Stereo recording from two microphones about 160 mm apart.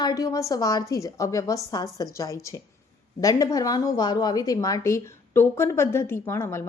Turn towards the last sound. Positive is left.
turn(degrees=15)  # may be behind; listen again after turning